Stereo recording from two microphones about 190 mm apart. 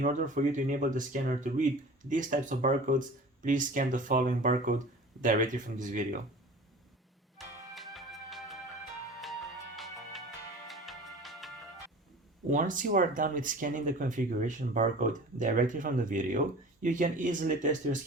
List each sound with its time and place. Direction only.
0.0 s speech: 40° right (ahead or behind)
7.3 s music: centre (ahead or behind)
12.5 s speech: 45° right (ahead or behind)